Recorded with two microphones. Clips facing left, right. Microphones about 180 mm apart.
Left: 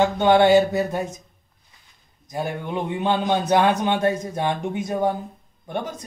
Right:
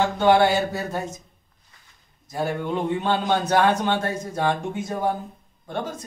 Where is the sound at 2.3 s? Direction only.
15° left (ahead or behind).